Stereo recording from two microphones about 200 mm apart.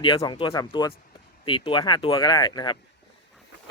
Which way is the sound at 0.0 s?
20° left (ahead or behind).